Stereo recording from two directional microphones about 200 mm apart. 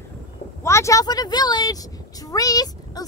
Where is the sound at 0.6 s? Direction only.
15° left (ahead or behind).